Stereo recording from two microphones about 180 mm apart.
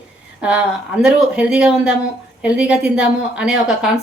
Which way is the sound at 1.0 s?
5° right (ahead or behind).